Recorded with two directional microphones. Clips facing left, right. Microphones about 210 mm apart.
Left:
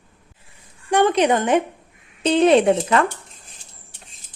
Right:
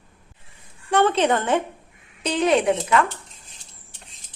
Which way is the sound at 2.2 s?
25° left (ahead or behind).